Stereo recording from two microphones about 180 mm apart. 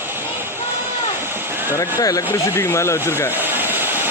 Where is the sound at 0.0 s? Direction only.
10° right (ahead or behind).